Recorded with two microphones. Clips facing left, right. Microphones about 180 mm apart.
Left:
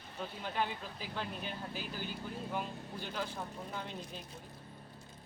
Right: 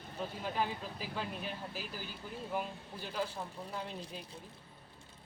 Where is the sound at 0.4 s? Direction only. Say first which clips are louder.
Even; 5° right (ahead or behind).